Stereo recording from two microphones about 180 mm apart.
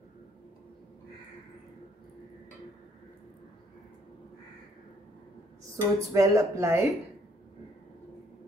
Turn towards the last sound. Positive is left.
turn(degrees=-15)  # may be behind; listen again after turning